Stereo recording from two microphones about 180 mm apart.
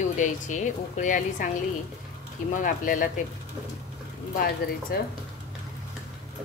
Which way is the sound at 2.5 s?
45° left (ahead or behind).